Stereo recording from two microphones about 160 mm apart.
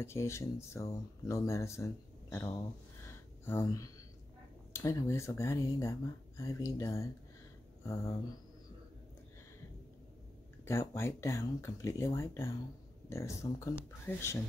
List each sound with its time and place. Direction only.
0.0 s speech: 15° left (ahead or behind)
3.1 s a sound: 15° left (ahead or behind)
4.7 s speech: 20° left (ahead or behind)
10.6 s speech: 20° left (ahead or behind)